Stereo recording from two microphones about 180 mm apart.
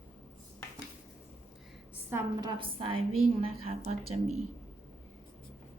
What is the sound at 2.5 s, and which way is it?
A woman's voice, 30° right (ahead or behind).